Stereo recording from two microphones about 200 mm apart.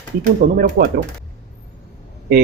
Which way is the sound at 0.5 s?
45° right (ahead or behind).